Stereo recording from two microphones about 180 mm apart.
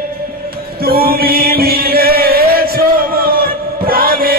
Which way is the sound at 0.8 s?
55° right (ahead or behind).